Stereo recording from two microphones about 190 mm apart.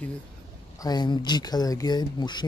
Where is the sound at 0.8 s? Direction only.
20° left (ahead or behind).